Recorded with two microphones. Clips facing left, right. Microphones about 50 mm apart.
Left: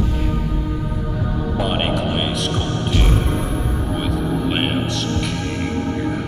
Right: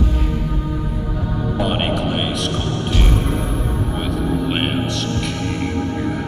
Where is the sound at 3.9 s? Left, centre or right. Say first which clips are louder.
Right 1 dB; centre.